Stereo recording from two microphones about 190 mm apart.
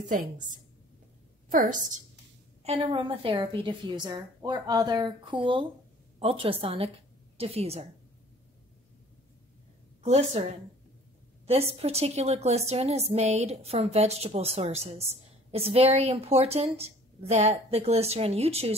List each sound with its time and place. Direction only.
1.5 s a woman's voice: 45° right (ahead or behind)
2.6 s a woman's voice: 30° right (ahead or behind)
10.0 s a woman's voice: 35° right (ahead or behind)
11.4 s a woman's voice: 30° right (ahead or behind)